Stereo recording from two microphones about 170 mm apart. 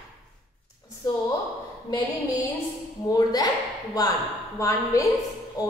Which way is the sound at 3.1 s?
25° left (ahead or behind).